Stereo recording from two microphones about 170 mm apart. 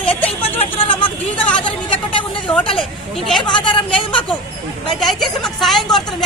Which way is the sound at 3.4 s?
30° left (ahead or behind).